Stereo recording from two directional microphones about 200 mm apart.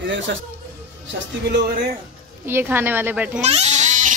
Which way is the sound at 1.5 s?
55° right (ahead or behind).